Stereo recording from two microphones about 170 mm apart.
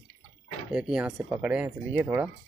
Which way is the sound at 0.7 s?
5° right (ahead or behind).